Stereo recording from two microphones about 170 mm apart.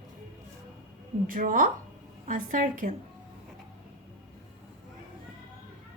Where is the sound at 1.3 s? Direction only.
55° right (ahead or behind).